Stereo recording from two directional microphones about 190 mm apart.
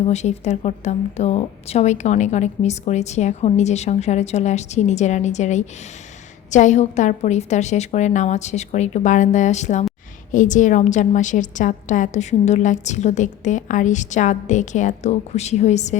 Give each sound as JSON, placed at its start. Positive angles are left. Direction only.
{"t": 0.0, "sound": "a woman's voice", "side_deg": 35}